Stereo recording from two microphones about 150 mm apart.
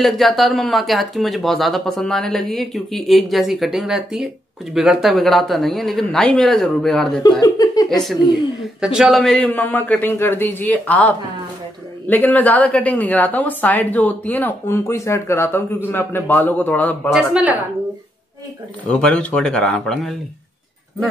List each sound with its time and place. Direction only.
0.0 s speech: centre (ahead or behind)
7.2 s speech: 25° left (ahead or behind)
7.9 s a woman's voice: centre (ahead or behind)
12.1 s a woman's voice: 10° left (ahead or behind)
17.1 s speech: 5° right (ahead or behind)
18.9 s speech: 5° left (ahead or behind)